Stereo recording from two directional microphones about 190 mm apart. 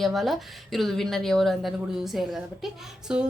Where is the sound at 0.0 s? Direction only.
Centre (ahead or behind).